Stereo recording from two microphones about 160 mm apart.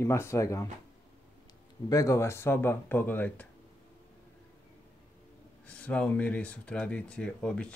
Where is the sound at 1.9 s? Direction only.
20° left (ahead or behind).